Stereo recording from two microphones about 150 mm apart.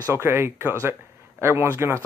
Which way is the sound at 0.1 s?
15° right (ahead or behind).